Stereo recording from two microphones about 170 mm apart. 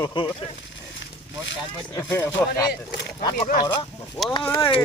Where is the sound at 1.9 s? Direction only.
15° left (ahead or behind).